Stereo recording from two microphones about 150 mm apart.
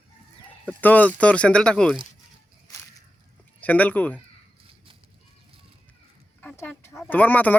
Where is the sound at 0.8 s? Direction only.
10° left (ahead or behind).